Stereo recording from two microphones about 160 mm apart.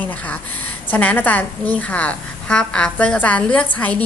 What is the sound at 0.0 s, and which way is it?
A woman's voice, 10° left (ahead or behind).